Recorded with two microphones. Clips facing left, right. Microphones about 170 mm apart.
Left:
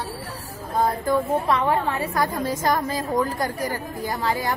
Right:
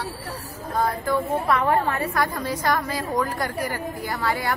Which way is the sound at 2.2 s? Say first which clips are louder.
Left 2 dB; 45° left (ahead or behind).